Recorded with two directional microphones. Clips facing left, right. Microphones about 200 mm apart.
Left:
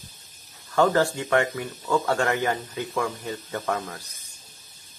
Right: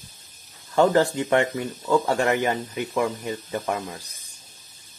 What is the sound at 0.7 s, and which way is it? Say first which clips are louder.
Speech: right 2 dB; 20° right (ahead or behind).